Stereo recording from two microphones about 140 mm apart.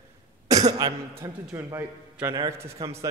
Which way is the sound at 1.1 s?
20° right (ahead or behind).